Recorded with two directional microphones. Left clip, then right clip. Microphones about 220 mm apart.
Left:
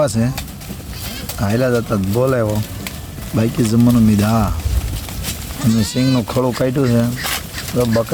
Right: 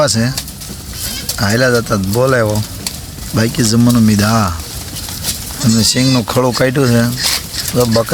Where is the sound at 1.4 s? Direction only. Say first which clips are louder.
Right 5 dB; centre (ahead or behind).